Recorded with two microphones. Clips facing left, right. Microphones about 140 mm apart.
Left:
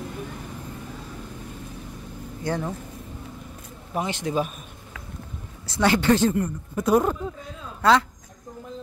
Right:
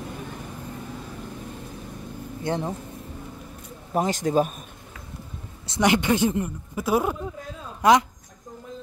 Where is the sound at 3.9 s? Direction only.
40° right (ahead or behind).